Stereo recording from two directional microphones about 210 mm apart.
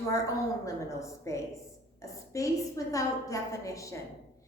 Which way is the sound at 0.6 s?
15° left (ahead or behind).